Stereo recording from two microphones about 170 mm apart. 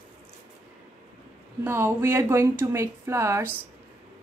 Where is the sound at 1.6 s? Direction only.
15° right (ahead or behind).